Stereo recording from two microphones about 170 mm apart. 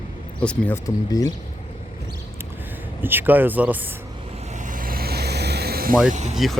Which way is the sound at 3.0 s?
10° right (ahead or behind).